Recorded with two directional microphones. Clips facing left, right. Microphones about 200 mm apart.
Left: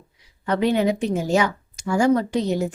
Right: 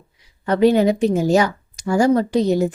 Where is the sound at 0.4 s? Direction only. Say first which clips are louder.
Right 5 dB; 40° right (ahead or behind).